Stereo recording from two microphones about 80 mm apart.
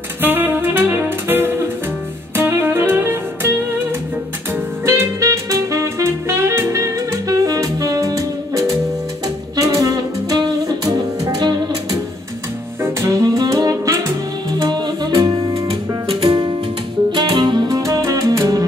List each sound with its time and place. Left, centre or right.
0.2 s saxophone: right
2.3 s music: right
4.8 s music: right
12.8 s saxophone: right
13.2 s music: right
14.6 s music: right
16.2 s music: right
17.6 s music: right